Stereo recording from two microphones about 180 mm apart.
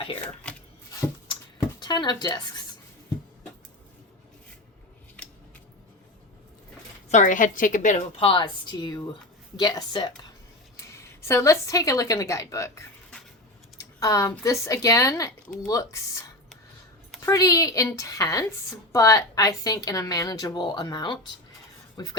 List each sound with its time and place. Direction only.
0.4 s chopping: 5° left (ahead or behind)
0.9 s a sound: 20° left (ahead or behind)
5.2 s scissors: 5° left (ahead or behind)
7.1 s a woman's voice: 45° left (ahead or behind); by 22.1 s 25° left (ahead or behind)